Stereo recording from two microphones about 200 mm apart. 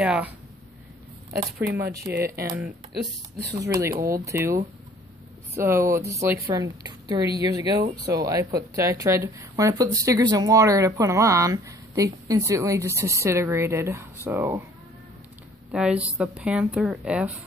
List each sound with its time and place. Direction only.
0.0 s speech: 5° right (ahead or behind)
1.8 s speech: 15° right (ahead or behind)
3.5 s speech: 15° right (ahead or behind)
15.7 s speech: 5° right (ahead or behind)